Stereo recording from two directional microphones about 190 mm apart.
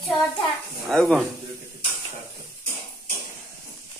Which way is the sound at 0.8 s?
Centre (ahead or behind).